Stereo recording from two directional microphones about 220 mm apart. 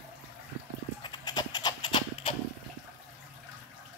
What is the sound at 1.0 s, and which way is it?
Horse, 20° left (ahead or behind).